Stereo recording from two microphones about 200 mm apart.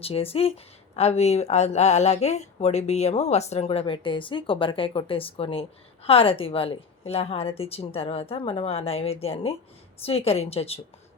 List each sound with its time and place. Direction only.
0.0 s speech: 30° left (ahead or behind)